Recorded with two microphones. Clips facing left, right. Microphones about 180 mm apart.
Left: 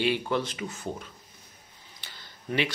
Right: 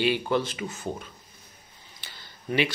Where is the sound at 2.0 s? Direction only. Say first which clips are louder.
Right 3 dB; 5° right (ahead or behind).